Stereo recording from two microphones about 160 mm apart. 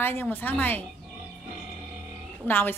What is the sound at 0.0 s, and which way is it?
Speech, 10° left (ahead or behind).